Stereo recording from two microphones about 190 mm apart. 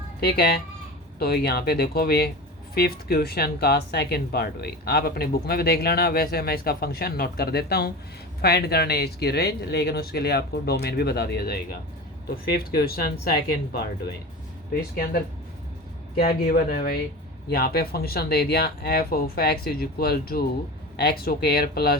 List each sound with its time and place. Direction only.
0.2 s speech: 55° left (ahead or behind)
12.7 s speech: 55° left (ahead or behind)